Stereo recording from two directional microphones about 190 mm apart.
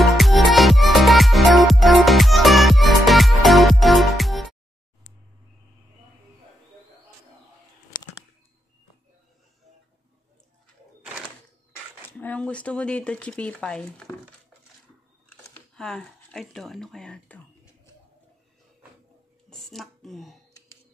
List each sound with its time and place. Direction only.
0.0 s music: centre (ahead or behind)
12.1 s speech: 10° left (ahead or behind)
15.5 s speech: 5° left (ahead or behind)
19.5 s a sound: centre (ahead or behind)